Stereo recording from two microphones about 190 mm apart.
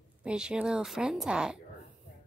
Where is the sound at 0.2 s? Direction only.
5° right (ahead or behind).